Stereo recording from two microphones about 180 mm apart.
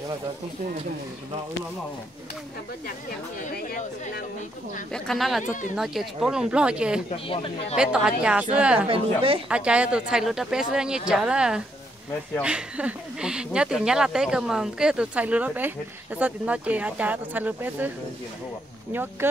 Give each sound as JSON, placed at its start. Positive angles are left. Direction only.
{"t": 3.5, "sound": "speech", "side_deg": 50}
{"t": 4.9, "sound": "speech", "side_deg": 0}
{"t": 5.4, "sound": "speech", "side_deg": 45}
{"t": 5.8, "sound": "speech", "side_deg": -5}
{"t": 7.1, "sound": "speech", "side_deg": 30}
{"t": 7.7, "sound": "speech", "side_deg": -5}
{"t": 8.8, "sound": "a woman's voice", "side_deg": -30}
{"t": 9.5, "sound": "speech", "side_deg": -5}